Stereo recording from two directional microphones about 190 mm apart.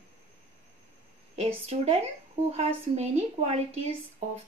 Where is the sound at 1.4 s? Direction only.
35° right (ahead or behind).